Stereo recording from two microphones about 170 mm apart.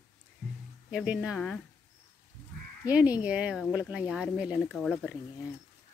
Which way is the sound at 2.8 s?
10° right (ahead or behind).